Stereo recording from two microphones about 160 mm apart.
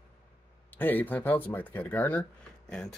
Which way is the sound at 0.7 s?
10° left (ahead or behind).